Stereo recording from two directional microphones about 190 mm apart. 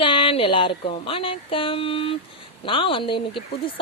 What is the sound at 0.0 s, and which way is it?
Speech, 25° left (ahead or behind).